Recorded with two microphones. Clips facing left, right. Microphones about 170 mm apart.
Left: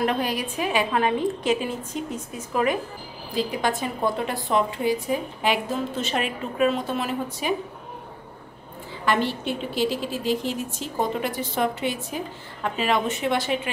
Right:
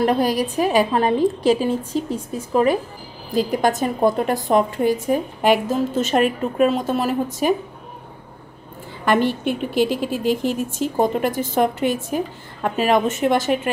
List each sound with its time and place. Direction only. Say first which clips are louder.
0.0 s a woman's voice: right 6 dB; 35° right (ahead or behind)
9.0 s a woman's voice: right 5 dB; 50° right (ahead or behind)